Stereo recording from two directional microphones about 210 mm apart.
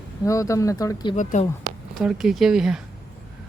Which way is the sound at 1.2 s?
35° left (ahead or behind).